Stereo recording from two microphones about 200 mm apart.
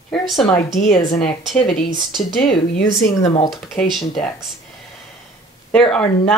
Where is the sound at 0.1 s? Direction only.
Centre (ahead or behind).